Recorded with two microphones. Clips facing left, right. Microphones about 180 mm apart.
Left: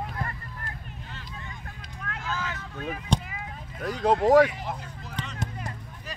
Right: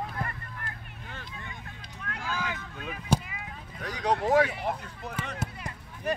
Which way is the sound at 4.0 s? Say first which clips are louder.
Left 5 dB; 45° left (ahead or behind).